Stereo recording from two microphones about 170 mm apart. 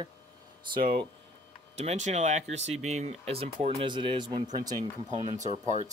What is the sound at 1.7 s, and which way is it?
Speech, 40° right (ahead or behind).